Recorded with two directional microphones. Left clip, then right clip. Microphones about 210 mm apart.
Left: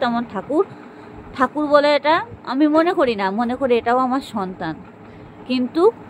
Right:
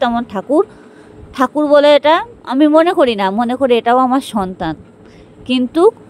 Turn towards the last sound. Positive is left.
turn(degrees=-45)  # may be behind; listen again after turning